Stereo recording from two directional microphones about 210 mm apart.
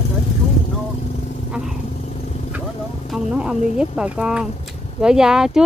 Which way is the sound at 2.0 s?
35° left (ahead or behind).